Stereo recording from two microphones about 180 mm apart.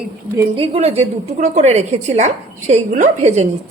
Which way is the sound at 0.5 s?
35° right (ahead or behind).